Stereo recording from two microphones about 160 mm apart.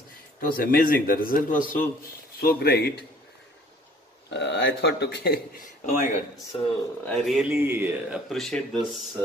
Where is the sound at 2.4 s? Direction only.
75° left (ahead or behind); by 3.0 s 90° left.